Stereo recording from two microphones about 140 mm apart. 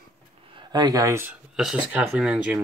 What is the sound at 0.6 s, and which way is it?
Speech, 30° right (ahead or behind).